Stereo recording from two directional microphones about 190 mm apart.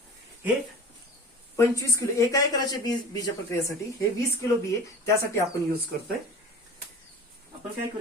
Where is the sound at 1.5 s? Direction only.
15° left (ahead or behind).